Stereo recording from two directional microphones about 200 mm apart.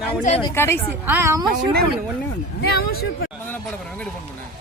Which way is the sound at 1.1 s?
10° right (ahead or behind).